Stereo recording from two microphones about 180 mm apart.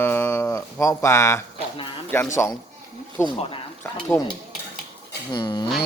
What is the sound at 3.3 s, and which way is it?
Speech, 30° left (ahead or behind).